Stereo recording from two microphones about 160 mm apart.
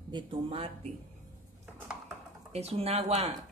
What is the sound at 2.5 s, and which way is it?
Speech, 40° right (ahead or behind).